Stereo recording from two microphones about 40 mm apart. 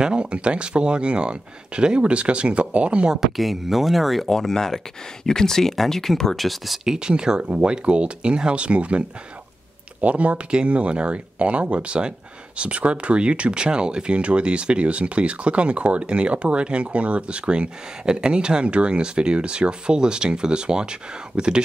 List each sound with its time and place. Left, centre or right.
0.0 s speech: right
3.2 s speech: centre
6.8 s speech: centre
10.0 s speech: right